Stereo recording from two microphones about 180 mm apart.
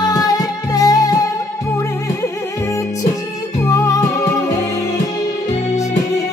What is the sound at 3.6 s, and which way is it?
Music, 20° left (ahead or behind).